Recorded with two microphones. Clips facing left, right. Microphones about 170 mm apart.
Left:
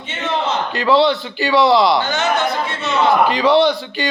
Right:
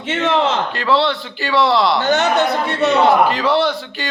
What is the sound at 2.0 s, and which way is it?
Speech, 65° right (ahead or behind).